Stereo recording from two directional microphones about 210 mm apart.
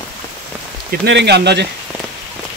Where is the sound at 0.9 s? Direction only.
55° right (ahead or behind).